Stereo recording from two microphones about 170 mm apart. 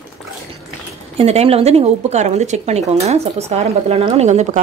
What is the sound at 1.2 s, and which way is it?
A woman's voice, 35° right (ahead or behind).